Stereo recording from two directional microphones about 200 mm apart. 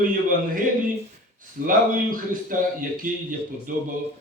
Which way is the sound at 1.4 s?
45° right (ahead or behind).